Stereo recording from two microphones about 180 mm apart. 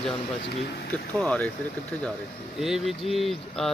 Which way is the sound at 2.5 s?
Centre (ahead or behind).